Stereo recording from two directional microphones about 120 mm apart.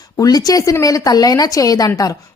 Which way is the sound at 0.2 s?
30° left (ahead or behind).